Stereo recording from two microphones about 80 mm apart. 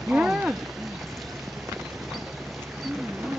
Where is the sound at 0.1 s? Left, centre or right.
Centre.